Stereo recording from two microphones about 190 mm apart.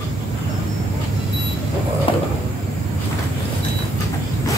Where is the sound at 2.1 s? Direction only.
30° left (ahead or behind).